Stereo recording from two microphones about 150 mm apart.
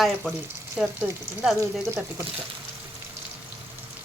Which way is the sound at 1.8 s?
20° right (ahead or behind).